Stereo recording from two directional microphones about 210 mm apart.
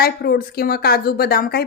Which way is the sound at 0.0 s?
45° left (ahead or behind).